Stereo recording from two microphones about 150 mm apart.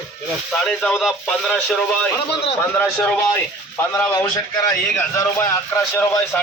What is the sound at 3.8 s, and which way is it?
A man's voice, 15° left (ahead or behind).